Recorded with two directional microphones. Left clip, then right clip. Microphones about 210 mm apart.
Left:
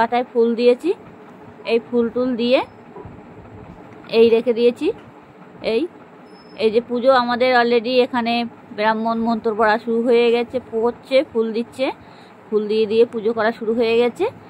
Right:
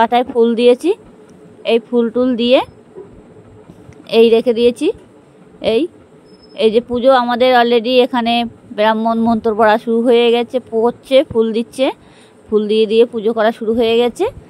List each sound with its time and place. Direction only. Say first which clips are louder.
0.0 s speech: right 5 dB; 50° right (ahead or behind)
4.1 s speech: right 4 dB; 50° right (ahead or behind)